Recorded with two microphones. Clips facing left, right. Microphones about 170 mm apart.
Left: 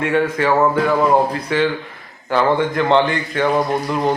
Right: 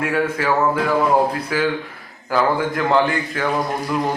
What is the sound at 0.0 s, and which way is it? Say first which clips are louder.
A man's voice: left 3 dB; 5° right (ahead or behind).